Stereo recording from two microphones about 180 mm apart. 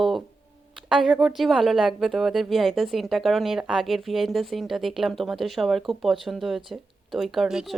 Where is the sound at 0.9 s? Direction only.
Centre (ahead or behind).